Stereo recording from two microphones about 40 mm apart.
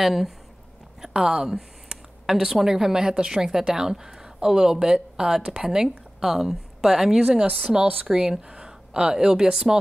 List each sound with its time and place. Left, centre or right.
0.0 s speech: centre
1.0 s speech: centre